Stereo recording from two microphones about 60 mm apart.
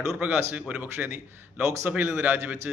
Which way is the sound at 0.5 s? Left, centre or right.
Right.